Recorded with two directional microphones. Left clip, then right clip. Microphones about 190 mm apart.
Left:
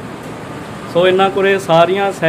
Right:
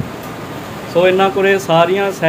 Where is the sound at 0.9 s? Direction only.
5° left (ahead or behind).